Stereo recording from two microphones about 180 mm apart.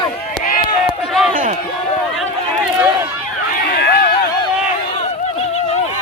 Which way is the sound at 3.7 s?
65° left (ahead or behind).